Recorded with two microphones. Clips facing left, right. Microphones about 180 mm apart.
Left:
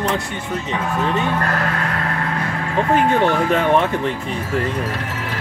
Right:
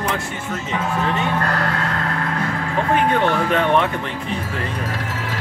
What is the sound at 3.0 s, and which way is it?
Speech, 5° left (ahead or behind).